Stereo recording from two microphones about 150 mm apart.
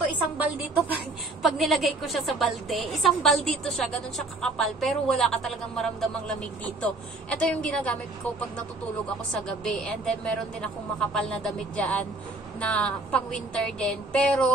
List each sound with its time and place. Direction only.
1.4 s a man's voice: centre (ahead or behind)
9.3 s a woman's voice: 5° left (ahead or behind)